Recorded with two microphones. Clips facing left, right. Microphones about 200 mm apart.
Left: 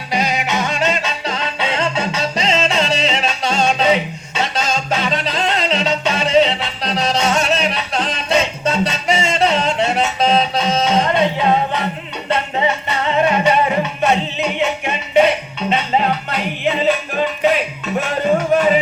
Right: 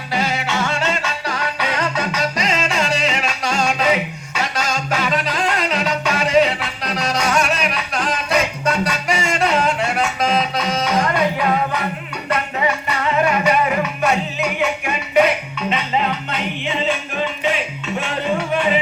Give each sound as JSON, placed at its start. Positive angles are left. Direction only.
{"t": 0.1, "sound": "music", "side_deg": 15}
{"t": 17.4, "sound": "music", "side_deg": 40}